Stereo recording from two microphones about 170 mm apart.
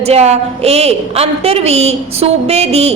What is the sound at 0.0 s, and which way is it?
A woman's voice, 40° right (ahead or behind).